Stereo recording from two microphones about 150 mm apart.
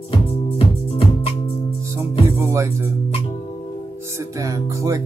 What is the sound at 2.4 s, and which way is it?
Music, 20° right (ahead or behind).